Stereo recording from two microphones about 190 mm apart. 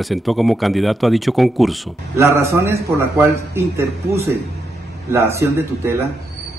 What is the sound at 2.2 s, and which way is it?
A man's voice, 15° right (ahead or behind).